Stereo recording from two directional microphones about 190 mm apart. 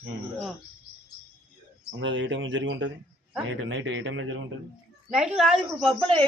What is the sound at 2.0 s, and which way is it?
Speech, 75° right (ahead or behind).